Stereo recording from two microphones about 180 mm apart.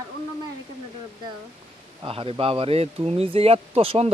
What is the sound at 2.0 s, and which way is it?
A man's voice, 30° right (ahead or behind).